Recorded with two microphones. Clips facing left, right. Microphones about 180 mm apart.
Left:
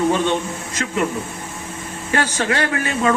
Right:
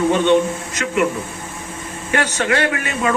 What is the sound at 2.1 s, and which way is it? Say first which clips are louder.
A man's voice: right 1 dB; 35° left (ahead or behind).